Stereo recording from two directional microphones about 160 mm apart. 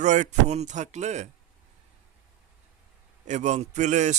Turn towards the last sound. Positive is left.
turn(degrees=-50)  # may be behind; listen again after turning